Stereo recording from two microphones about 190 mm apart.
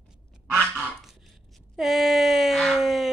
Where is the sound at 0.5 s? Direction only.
Centre (ahead or behind).